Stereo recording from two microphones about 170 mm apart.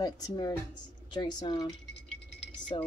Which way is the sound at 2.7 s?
25° left (ahead or behind).